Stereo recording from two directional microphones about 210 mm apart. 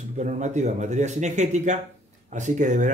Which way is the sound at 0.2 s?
35° right (ahead or behind).